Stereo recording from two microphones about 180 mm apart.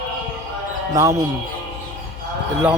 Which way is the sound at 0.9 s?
15° right (ahead or behind).